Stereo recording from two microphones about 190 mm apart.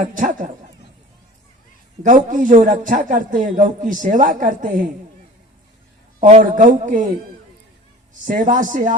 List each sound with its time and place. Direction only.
0.0 s a man's voice: 45° right (ahead or behind)
2.0 s a man's voice: 45° right (ahead or behind)
6.2 s a man's voice: 40° right (ahead or behind)
8.2 s a man's voice: 45° right (ahead or behind)